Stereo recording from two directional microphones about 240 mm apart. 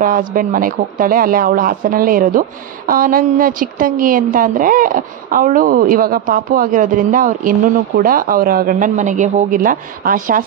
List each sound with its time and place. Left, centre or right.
0.0 s a woman's voice: right